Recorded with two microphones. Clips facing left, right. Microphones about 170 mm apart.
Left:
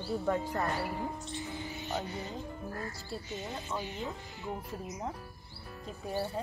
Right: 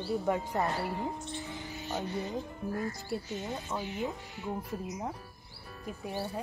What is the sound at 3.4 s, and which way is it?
Speech, centre (ahead or behind).